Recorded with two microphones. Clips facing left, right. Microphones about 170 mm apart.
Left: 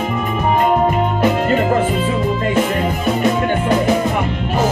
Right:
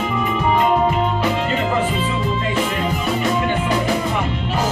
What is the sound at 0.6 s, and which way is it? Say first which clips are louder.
Music: left 3 dB; 50° left (ahead or behind).